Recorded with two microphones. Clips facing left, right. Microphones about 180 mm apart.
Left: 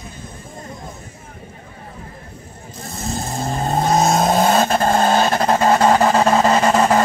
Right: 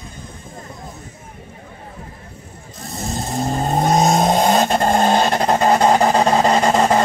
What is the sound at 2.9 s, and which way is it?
Vehicle, centre (ahead or behind).